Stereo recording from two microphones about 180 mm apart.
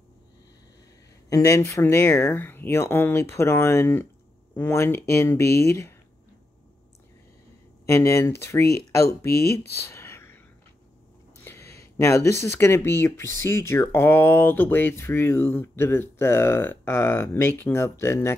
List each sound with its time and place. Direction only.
1.3 s speech: 20° left (ahead or behind)
7.8 s speech: 15° left (ahead or behind)
9.8 s a sound: 15° left (ahead or behind)
11.4 s speech: 15° left (ahead or behind)